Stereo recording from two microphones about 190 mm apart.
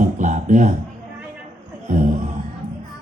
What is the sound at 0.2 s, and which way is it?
Music, 40° right (ahead or behind).